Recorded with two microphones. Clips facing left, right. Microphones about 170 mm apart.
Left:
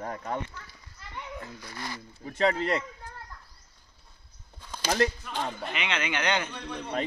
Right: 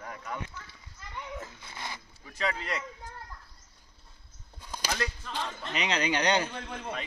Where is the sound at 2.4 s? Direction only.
40° left (ahead or behind).